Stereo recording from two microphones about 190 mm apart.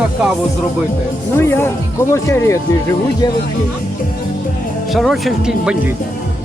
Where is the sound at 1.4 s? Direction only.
10° left (ahead or behind).